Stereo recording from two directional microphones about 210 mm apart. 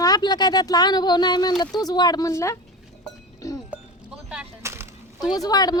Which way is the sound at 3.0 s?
15° left (ahead or behind).